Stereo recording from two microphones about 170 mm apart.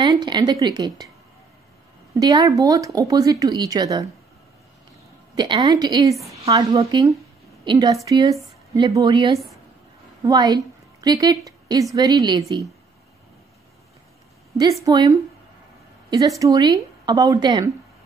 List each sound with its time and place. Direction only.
0.0 s speech: 25° right (ahead or behind)
2.1 s speech: 25° right (ahead or behind)
5.3 s a woman's voice: 25° right (ahead or behind)
14.6 s speech: 25° right (ahead or behind)